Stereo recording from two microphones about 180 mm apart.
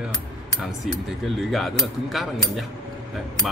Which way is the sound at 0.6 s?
Centre (ahead or behind).